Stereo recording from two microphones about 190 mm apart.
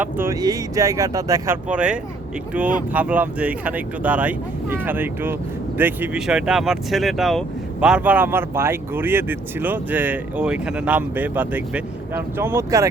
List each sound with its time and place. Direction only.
0.0 s speech: 15° right (ahead or behind)
1.6 s speech: 5° right (ahead or behind)